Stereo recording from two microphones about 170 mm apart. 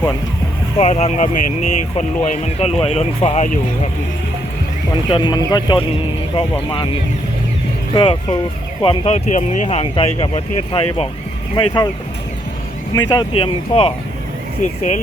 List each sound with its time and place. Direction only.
0.8 s speech: 40° left (ahead or behind)
5.1 s speech: 25° left (ahead or behind)
9.1 s speech: 45° left (ahead or behind); by 11.9 s 25° left (ahead or behind)
13.0 s speech: 25° left (ahead or behind)
14.6 s speech: 45° left (ahead or behind)